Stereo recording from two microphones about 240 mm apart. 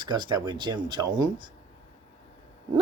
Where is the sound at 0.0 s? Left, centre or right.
Centre.